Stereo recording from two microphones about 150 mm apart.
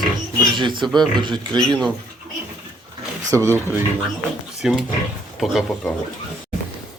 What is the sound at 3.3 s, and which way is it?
Speech, 20° right (ahead or behind).